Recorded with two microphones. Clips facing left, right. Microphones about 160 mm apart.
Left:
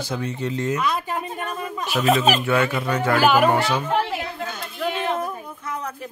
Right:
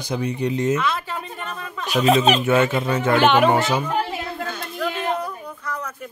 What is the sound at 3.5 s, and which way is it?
Speech, 20° right (ahead or behind).